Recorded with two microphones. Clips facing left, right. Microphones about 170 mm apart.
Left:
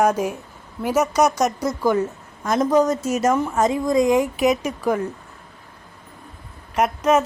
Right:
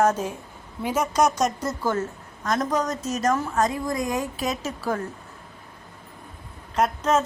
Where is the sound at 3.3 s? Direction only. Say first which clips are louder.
Left 4 dB; 20° left (ahead or behind).